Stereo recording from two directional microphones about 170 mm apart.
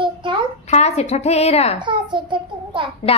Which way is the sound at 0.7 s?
40° left (ahead or behind).